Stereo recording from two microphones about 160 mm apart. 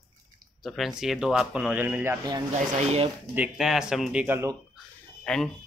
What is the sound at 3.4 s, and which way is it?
Speech, 5° right (ahead or behind).